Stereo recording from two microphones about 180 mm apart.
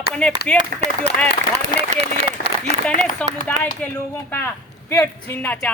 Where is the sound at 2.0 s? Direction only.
70° left (ahead or behind).